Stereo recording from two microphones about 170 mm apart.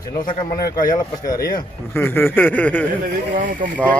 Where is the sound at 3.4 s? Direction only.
50° right (ahead or behind).